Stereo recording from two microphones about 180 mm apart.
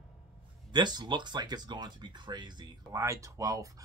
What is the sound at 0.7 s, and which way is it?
Speech, 25° right (ahead or behind).